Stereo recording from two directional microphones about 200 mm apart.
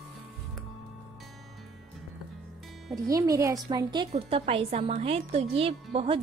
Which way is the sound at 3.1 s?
15° right (ahead or behind).